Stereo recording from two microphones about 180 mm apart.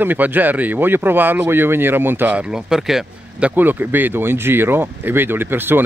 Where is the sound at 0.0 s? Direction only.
10° right (ahead or behind).